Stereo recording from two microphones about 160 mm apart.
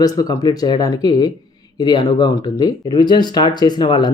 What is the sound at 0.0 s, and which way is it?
Speech, 25° left (ahead or behind).